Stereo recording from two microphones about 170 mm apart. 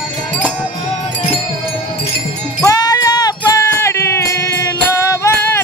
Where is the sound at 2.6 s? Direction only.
20° left (ahead or behind).